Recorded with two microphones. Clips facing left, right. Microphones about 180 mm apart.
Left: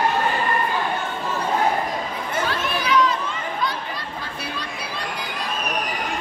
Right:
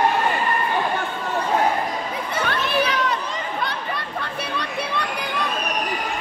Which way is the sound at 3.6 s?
60° right (ahead or behind).